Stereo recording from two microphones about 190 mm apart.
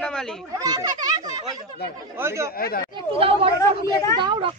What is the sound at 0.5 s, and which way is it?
Speech, 20° right (ahead or behind).